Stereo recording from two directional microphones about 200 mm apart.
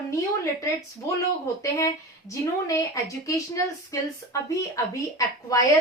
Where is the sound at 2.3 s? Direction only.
15° left (ahead or behind).